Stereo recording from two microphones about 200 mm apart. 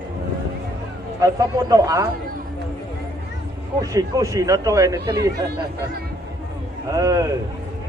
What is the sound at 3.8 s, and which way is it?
Speech, 15° right (ahead or behind).